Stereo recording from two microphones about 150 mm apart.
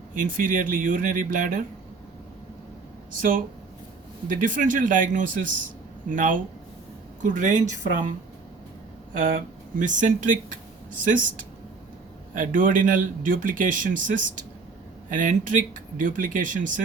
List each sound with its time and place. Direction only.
0.1 s a man's voice: 60° right (ahead or behind)
3.1 s a man's voice: 65° right (ahead or behind)
9.1 s a man's voice: 65° right (ahead or behind)